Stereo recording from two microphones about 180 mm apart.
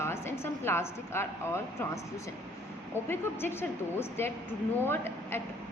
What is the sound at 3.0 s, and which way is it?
A woman's voice, 15° left (ahead or behind).